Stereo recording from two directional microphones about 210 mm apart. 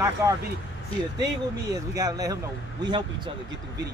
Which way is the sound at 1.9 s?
15° right (ahead or behind).